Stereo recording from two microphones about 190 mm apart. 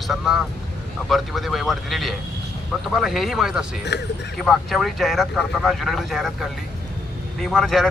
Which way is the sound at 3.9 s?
65° left (ahead or behind).